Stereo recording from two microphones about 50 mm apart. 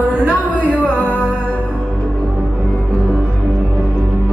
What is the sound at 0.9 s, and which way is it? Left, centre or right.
Music, left.